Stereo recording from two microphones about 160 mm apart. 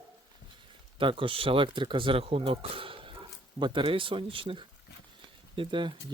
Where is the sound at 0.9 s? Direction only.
30° right (ahead or behind).